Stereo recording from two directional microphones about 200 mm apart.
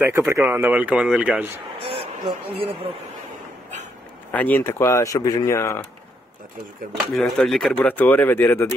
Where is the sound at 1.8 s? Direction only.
30° right (ahead or behind).